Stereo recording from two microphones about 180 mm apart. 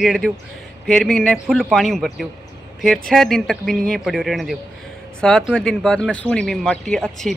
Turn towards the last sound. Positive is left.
turn(degrees=0)  # may be behind; listen again after turning